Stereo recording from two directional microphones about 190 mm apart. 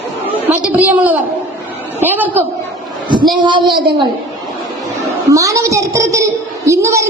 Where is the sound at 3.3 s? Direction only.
25° right (ahead or behind).